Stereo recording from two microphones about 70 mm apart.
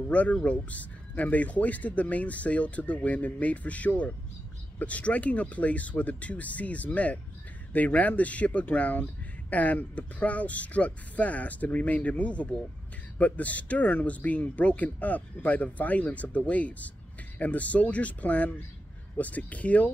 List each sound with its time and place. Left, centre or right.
0.1 s speech: left